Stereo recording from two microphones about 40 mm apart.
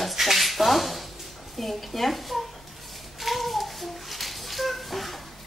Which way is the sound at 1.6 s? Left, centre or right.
Centre.